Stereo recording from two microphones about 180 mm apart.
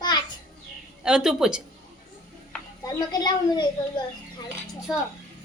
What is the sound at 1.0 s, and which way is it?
Speech, 5° right (ahead or behind).